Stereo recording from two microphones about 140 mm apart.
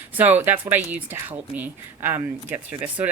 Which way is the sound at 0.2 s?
15° right (ahead or behind).